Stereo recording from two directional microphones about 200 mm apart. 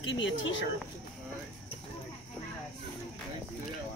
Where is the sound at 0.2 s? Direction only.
70° left (ahead or behind).